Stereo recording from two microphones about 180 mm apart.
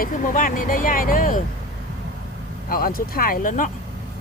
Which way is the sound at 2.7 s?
55° left (ahead or behind).